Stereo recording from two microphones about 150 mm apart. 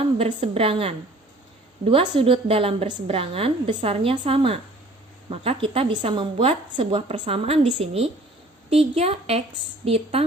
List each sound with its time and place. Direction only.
0.0 s a woman's voice: 40° right (ahead or behind)